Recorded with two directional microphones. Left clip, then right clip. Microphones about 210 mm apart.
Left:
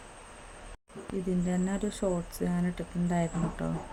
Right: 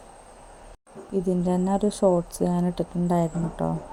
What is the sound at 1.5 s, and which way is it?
Speech, 20° right (ahead or behind).